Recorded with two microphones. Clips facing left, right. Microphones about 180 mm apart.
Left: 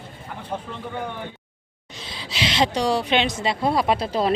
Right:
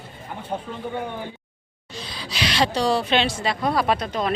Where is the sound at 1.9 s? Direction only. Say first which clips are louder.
Right 1 dB; 25° left (ahead or behind).